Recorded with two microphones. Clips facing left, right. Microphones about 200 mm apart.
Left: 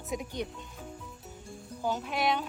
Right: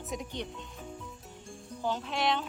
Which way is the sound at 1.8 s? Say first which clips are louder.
Left 1 dB; 5° left (ahead or behind).